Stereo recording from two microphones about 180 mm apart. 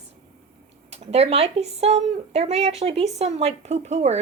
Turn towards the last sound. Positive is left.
turn(degrees=-40)  # may be behind; listen again after turning